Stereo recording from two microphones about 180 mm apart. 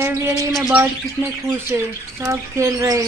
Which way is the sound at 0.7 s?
10° right (ahead or behind).